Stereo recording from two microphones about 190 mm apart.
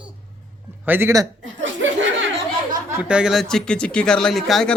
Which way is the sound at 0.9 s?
15° right (ahead or behind).